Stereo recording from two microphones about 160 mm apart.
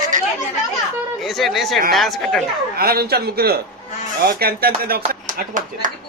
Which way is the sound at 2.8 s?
70° right (ahead or behind).